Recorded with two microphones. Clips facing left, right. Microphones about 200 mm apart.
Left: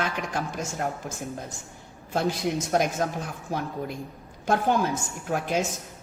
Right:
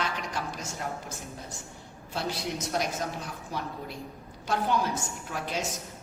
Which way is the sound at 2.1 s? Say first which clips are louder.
Left 7 dB; 50° left (ahead or behind).